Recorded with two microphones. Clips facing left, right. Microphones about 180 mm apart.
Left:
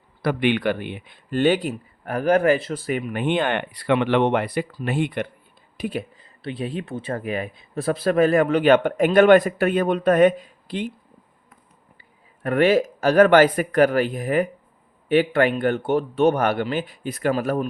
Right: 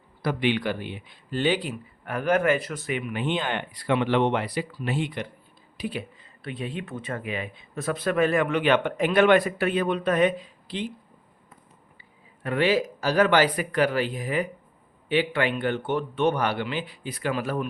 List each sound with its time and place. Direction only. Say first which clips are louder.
0.2 s speech: left 4 dB; 60° left (ahead or behind); by 3.0 s 35° left (ahead or behind)
3.1 s speech: left 6 dB; 55° left (ahead or behind)
6.4 s speech: left 5 dB; 35° left (ahead or behind); by 10.8 s 50° left (ahead or behind)
12.4 s speech: left 5 dB; 50° left (ahead or behind)